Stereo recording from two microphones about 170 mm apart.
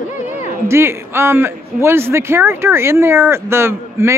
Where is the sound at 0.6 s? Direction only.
15° right (ahead or behind).